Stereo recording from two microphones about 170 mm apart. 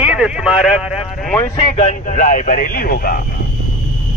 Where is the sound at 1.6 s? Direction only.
35° left (ahead or behind); by 3.3 s 60° left (ahead or behind).